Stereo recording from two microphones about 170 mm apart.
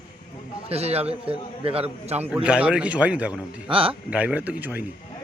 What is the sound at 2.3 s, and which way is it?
A man's voice, 5° right (ahead or behind).